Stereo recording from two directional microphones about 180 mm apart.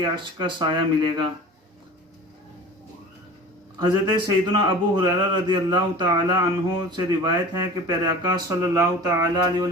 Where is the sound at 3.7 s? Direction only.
25° right (ahead or behind).